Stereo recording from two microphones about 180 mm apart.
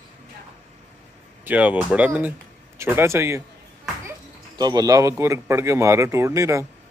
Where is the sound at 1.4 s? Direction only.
10° right (ahead or behind).